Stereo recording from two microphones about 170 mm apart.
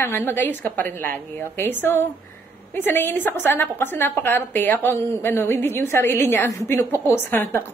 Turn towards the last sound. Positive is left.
turn(degrees=15)  # may be behind; listen again after turning